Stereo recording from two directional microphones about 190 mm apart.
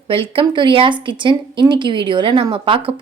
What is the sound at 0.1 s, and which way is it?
A woman's voice, 30° right (ahead or behind).